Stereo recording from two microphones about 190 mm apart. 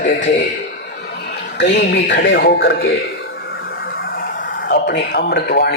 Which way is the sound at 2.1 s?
60° left (ahead or behind).